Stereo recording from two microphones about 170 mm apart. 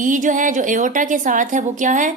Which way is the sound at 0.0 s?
50° right (ahead or behind).